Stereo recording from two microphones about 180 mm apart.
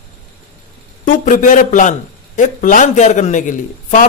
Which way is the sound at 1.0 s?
45° left (ahead or behind).